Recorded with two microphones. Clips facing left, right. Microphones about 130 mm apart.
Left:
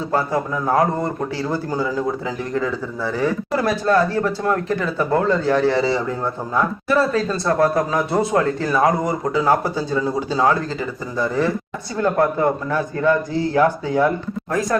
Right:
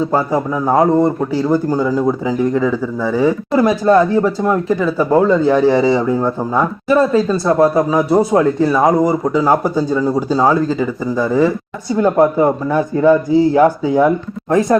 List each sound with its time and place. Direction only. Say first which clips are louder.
0.1 s speech: right 5 dB; 15° right (ahead or behind)